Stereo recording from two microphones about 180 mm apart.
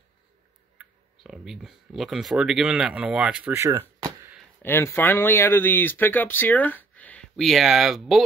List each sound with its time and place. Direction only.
0.7 s speech: 5° right (ahead or behind)
4.0 s a sound: 10° right (ahead or behind)
4.6 s speech: 15° left (ahead or behind)